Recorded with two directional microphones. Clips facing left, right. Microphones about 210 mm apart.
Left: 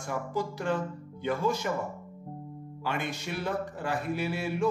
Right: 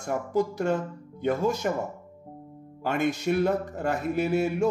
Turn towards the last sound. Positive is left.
turn(degrees=-45)  # may be behind; listen again after turning